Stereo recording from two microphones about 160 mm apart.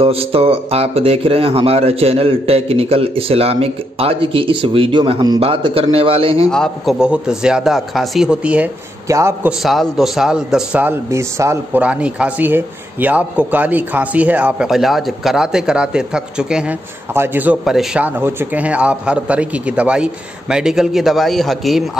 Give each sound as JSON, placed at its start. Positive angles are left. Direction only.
{"t": 0.0, "sound": "speech", "side_deg": -35}
{"t": 6.5, "sound": "a man's voice", "side_deg": 0}
{"t": 9.0, "sound": "a man's voice", "side_deg": -20}
{"t": 9.5, "sound": "speech", "side_deg": 0}